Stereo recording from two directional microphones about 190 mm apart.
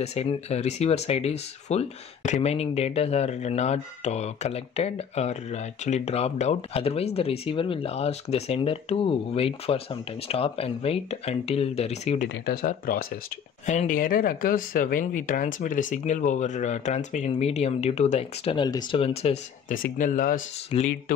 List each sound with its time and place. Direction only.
0.0 s speech: 35° left (ahead or behind)
12.4 s speech: 50° left (ahead or behind); by 19.3 s 30° left (ahead or behind)
19.7 s speech: 45° left (ahead or behind)
20.7 s speech: 30° left (ahead or behind)